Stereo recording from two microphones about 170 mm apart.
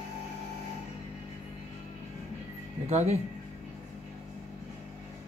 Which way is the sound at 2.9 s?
40° right (ahead or behind).